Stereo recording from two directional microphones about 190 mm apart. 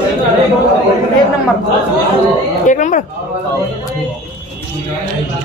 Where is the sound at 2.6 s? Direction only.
40° left (ahead or behind).